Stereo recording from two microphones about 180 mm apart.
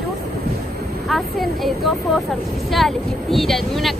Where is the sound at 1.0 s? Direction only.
Centre (ahead or behind).